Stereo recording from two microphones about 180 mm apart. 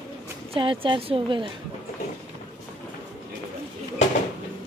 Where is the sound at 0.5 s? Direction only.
30° right (ahead or behind).